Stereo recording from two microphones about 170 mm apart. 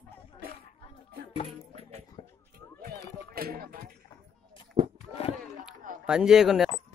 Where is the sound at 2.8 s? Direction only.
60° right (ahead or behind).